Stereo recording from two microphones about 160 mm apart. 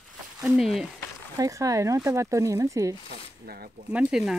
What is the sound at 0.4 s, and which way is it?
Speech, centre (ahead or behind).